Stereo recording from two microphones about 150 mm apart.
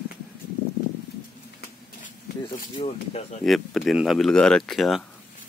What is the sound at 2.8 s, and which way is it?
Speech, 45° left (ahead or behind).